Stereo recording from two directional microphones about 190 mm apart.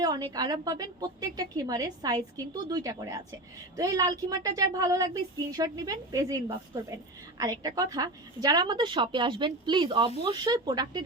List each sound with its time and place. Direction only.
0.0 s a woman's voice: 20° right (ahead or behind)
7.3 s a woman's voice: 20° right (ahead or behind)